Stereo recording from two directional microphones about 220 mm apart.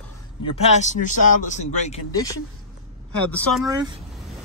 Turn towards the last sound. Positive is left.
turn(degrees=-20)  # may be behind; listen again after turning